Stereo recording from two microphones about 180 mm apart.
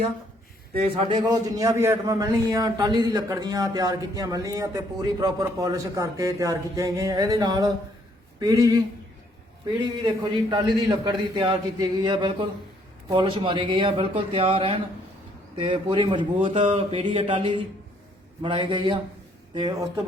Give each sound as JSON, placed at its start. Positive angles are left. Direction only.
{"t": 0.8, "sound": "speech", "side_deg": -35}
{"t": 1.2, "sound": "a man's voice", "side_deg": -20}
{"t": 10.3, "sound": "a man's voice", "side_deg": -25}